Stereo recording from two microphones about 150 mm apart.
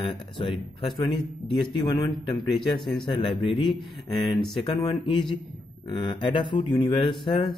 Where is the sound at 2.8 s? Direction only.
Centre (ahead or behind).